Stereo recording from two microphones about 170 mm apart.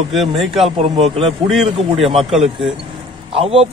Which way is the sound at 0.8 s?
35° right (ahead or behind).